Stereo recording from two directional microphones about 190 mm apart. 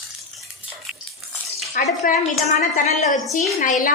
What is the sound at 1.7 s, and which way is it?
A woman's voice, 45° left (ahead or behind).